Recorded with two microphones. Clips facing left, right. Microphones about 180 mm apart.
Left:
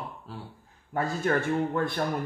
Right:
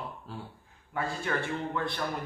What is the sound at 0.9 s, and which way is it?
A man's voice, 40° left (ahead or behind).